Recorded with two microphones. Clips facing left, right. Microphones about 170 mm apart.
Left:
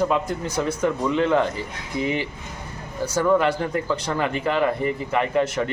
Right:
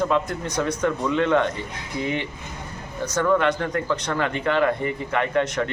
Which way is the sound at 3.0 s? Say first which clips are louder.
Left 1 dB; 10° left (ahead or behind).